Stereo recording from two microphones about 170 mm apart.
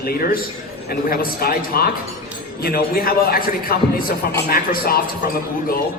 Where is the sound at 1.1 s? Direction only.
60° left (ahead or behind).